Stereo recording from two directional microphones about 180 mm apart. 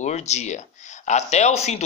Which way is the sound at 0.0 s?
40° left (ahead or behind).